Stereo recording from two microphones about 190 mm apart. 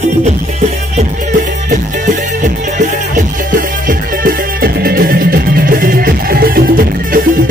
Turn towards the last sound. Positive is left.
turn(degrees=-50)  # may be behind; listen again after turning